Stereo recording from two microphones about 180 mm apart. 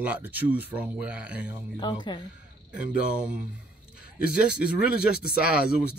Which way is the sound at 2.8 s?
5° right (ahead or behind).